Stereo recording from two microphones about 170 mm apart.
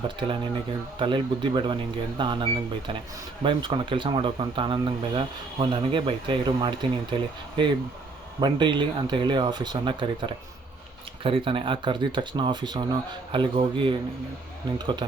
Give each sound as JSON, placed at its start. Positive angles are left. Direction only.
{"t": 0.9, "sound": "speech", "side_deg": -30}